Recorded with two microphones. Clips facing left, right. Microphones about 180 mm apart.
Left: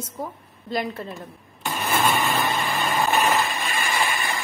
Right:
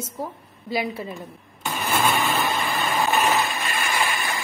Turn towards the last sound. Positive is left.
turn(degrees=0)  # may be behind; listen again after turning